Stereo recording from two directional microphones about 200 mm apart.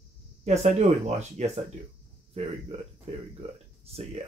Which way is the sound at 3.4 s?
30° right (ahead or behind).